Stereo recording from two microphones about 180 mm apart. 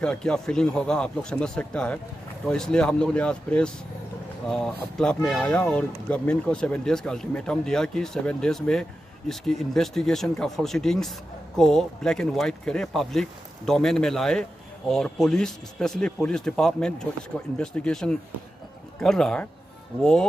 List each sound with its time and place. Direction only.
0.0 s speech: 5° left (ahead or behind)